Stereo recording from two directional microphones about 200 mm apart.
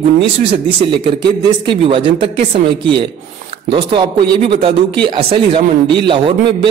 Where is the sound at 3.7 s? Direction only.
25° right (ahead or behind).